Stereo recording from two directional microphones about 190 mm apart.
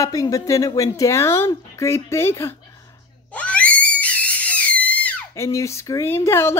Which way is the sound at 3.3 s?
5° left (ahead or behind).